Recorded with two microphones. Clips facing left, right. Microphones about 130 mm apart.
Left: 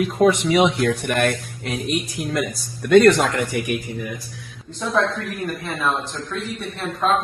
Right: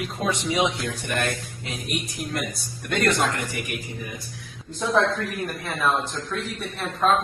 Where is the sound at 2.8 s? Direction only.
90° left.